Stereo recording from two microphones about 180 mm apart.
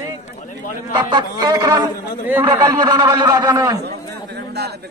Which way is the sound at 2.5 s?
20° right (ahead or behind).